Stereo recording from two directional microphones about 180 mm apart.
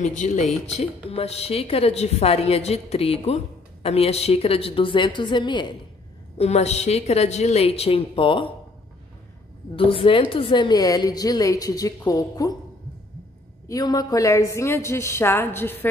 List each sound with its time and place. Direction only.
0.0 s a woman's voice: 45° left (ahead or behind); by 5.8 s 25° left (ahead or behind)
6.3 s a woman's voice: 35° left (ahead or behind)
9.8 s a woman's voice: 30° left (ahead or behind)
13.7 s a woman's voice: 20° left (ahead or behind)